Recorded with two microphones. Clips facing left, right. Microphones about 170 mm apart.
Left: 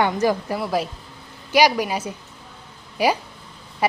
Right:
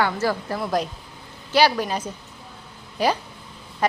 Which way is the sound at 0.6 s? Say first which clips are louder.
Left 1 dB; 5° left (ahead or behind).